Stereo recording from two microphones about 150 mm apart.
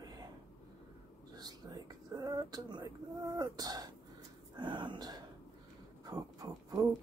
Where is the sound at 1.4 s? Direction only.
25° right (ahead or behind).